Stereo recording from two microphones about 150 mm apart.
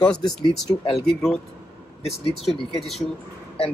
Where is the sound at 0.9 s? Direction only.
5° left (ahead or behind).